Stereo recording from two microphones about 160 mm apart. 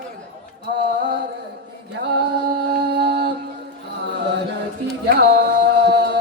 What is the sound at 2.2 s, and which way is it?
Music, 85° right.